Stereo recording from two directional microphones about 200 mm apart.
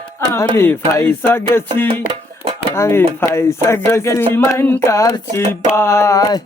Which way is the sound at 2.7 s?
15° left (ahead or behind).